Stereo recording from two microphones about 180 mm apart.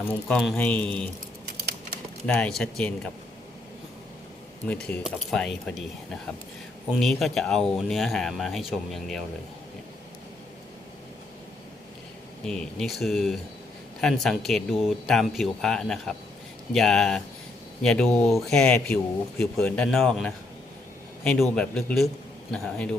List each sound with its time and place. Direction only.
0.0 s speech: 5° left (ahead or behind)
1.5 s a sound: 60° right (ahead or behind)
2.2 s speech: 5° left (ahead or behind)
4.7 s speech: 5° left (ahead or behind)
7.0 s speech: centre (ahead or behind)
12.5 s speech: 5° left (ahead or behind)